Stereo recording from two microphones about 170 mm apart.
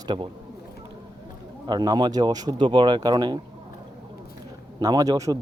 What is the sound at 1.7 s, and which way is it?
Speech, 25° right (ahead or behind).